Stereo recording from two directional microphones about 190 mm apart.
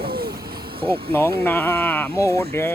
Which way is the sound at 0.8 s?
30° right (ahead or behind).